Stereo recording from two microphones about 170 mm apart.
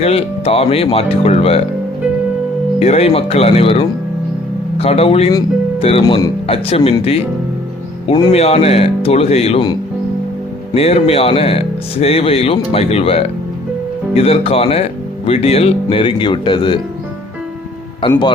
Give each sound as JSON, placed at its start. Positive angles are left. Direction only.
{"t": 0.0, "sound": "speech", "side_deg": 35}
{"t": 2.7, "sound": "speech", "side_deg": 40}
{"t": 8.0, "sound": "speech", "side_deg": 30}
{"t": 10.8, "sound": "speech", "side_deg": 35}